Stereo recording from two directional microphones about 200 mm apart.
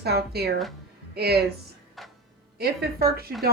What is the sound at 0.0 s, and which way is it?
A woman's voice, 55° right (ahead or behind).